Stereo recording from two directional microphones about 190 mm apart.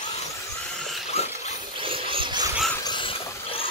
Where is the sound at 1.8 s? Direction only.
30° right (ahead or behind).